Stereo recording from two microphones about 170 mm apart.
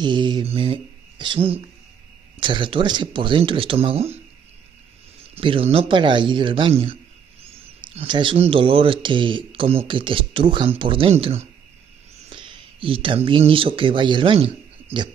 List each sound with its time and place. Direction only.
0.0 s speech: 25° right (ahead or behind)
5.3 s speech: 30° right (ahead or behind)